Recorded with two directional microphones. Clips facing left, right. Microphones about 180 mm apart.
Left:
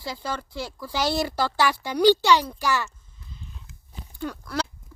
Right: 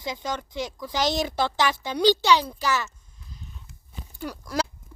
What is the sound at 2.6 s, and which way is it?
Speech, 15° left (ahead or behind).